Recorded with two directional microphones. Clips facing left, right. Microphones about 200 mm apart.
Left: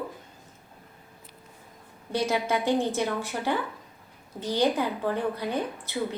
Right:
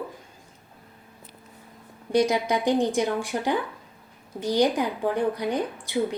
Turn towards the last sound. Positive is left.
turn(degrees=-15)  # may be behind; listen again after turning